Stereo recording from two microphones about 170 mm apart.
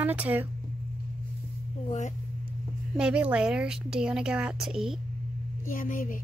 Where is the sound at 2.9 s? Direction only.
5° right (ahead or behind).